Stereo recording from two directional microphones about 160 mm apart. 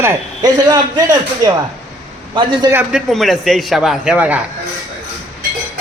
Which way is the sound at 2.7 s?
10° right (ahead or behind).